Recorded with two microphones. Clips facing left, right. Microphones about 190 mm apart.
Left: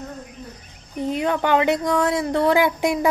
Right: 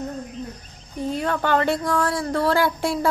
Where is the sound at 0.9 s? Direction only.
20° left (ahead or behind).